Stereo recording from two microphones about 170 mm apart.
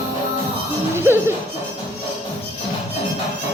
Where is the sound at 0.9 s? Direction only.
15° right (ahead or behind).